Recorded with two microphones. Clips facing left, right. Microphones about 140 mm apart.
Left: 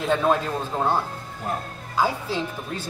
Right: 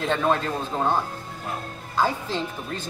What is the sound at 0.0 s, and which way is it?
Speech, 5° left (ahead or behind).